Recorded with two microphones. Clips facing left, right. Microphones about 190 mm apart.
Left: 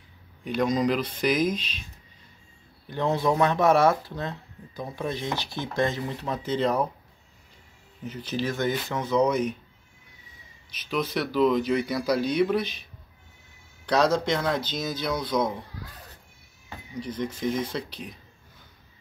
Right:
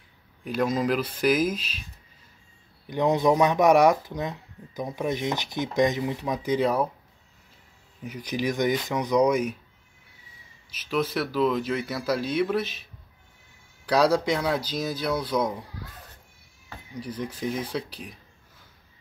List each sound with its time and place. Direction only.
0.4 s speech: 5° right (ahead or behind)
2.9 s speech: 15° right (ahead or behind)
8.0 s speech: 10° right (ahead or behind)
10.9 s speech: 5° right (ahead or behind)
13.8 s speech: 10° right (ahead or behind)
17.2 s speech: 5° right (ahead or behind)